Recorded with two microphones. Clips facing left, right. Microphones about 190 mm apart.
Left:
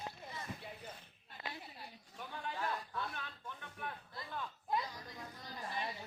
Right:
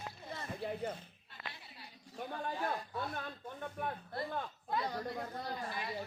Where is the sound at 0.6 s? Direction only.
60° right (ahead or behind).